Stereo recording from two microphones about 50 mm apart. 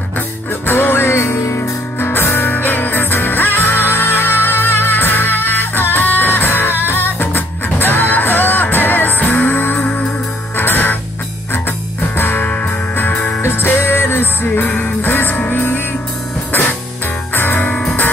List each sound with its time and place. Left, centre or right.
0.5 s music: left
12.2 s music: left
12.4 s music: left
17.3 s music: left